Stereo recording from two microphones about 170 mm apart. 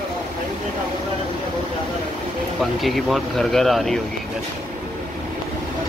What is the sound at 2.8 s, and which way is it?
Speech, centre (ahead or behind).